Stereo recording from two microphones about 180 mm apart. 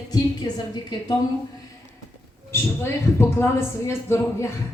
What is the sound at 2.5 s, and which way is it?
A woman's voice, 15° left (ahead or behind).